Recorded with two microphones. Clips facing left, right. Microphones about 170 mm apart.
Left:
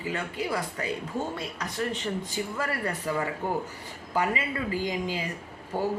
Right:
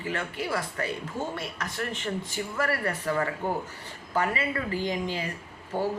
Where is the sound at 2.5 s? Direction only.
15° left (ahead or behind).